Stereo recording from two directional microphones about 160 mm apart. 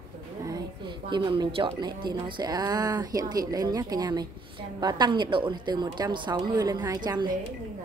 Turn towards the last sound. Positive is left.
turn(degrees=-25)  # may be behind; listen again after turning